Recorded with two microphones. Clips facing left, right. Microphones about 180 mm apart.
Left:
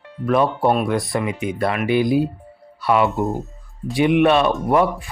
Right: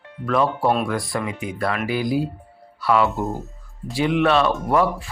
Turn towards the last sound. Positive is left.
turn(degrees=20)  # may be behind; listen again after turning